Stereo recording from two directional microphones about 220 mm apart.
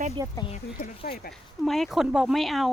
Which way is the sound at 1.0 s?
45° left (ahead or behind).